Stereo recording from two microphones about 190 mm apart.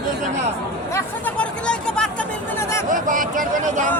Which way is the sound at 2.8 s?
45° right (ahead or behind).